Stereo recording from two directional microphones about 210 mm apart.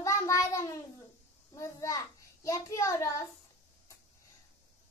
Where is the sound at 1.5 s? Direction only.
15° left (ahead or behind).